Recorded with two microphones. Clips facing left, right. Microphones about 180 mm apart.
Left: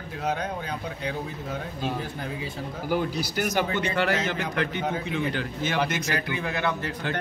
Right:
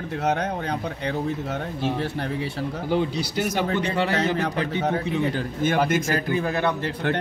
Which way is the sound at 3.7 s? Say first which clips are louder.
Right 2 dB; 35° right (ahead or behind).